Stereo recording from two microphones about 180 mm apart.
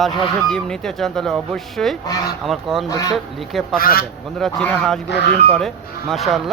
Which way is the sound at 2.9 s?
20° left (ahead or behind).